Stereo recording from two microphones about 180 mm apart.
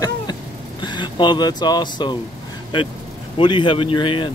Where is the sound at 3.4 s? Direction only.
25° left (ahead or behind).